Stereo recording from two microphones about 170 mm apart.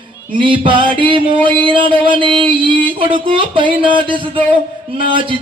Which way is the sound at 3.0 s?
30° right (ahead or behind).